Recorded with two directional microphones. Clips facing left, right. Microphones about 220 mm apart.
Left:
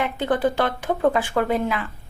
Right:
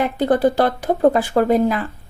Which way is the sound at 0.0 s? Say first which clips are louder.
Right 5 dB; 40° right (ahead or behind).